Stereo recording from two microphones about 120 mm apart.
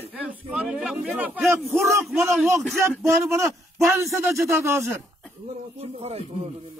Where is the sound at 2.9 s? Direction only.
20° right (ahead or behind).